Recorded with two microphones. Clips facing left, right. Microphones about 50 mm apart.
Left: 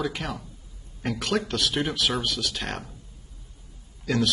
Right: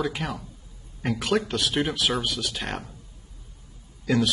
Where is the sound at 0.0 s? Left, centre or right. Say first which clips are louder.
Right 1 dB; centre.